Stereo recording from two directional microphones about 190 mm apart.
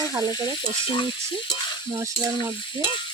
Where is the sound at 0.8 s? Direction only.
25° left (ahead or behind).